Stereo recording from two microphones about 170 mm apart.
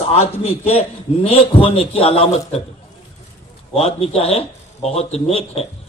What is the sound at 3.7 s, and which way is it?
A man's voice, 35° left (ahead or behind).